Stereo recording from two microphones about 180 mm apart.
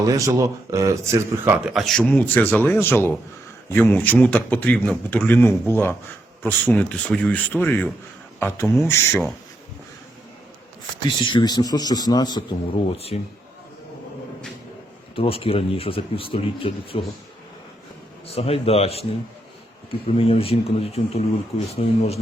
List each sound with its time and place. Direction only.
0.0 s speech: 20° right (ahead or behind)
1.7 s a man's voice: 5° left (ahead or behind)
11.2 s speech: 25° left (ahead or behind)
15.1 s speech: 30° left (ahead or behind)
18.3 s speech: 35° left (ahead or behind)
20.1 s speech: 30° left (ahead or behind)